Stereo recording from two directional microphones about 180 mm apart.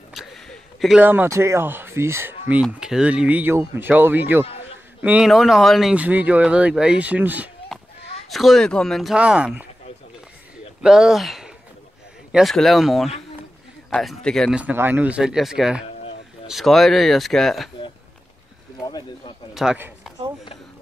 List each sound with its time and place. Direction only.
0.1 s speech: centre (ahead or behind)
10.8 s speech: 5° right (ahead or behind)
18.9 s speech: 25° left (ahead or behind)
19.5 s speech: 5° right (ahead or behind)